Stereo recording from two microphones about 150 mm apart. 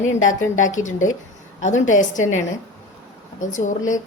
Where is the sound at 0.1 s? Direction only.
55° left (ahead or behind).